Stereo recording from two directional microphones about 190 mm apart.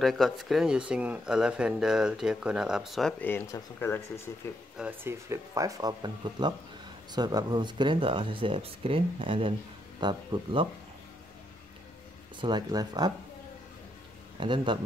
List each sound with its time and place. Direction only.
0.0 s speech: centre (ahead or behind)
4.7 s speech: 10° right (ahead or behind); by 10.7 s 25° right (ahead or behind)
12.4 s speech: 25° right (ahead or behind)
14.4 s speech: 25° right (ahead or behind)